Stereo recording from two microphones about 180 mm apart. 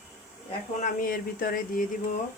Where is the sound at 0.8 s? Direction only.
50° left (ahead or behind).